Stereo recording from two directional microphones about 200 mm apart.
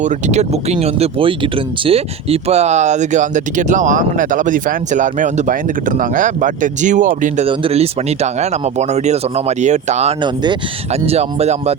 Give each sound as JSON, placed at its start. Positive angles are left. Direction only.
{"t": 0.0, "sound": "speech", "side_deg": -35}